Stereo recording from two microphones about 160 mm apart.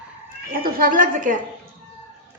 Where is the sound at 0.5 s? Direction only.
65° right (ahead or behind).